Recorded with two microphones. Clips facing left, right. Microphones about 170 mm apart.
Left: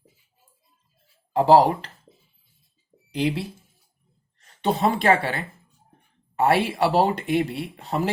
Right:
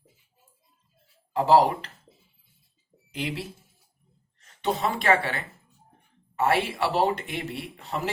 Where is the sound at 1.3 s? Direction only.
30° left (ahead or behind).